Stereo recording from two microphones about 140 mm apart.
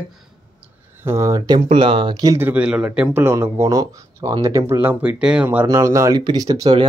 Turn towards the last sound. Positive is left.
turn(degrees=-30)  # may be behind; listen again after turning